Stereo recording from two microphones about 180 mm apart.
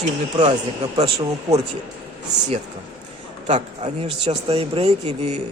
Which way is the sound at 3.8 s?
35° right (ahead or behind).